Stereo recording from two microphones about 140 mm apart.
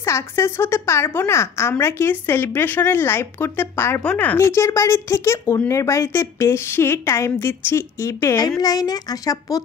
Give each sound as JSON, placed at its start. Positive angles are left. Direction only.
{"t": 0.0, "sound": "a woman's voice", "side_deg": 20}